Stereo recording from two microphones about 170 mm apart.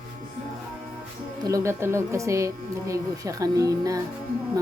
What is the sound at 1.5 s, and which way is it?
Speech, 15° right (ahead or behind).